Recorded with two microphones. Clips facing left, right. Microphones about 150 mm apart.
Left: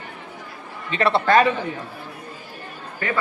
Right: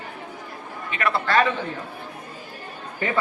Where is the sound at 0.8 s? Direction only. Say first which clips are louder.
Left 5 dB; 30° left (ahead or behind).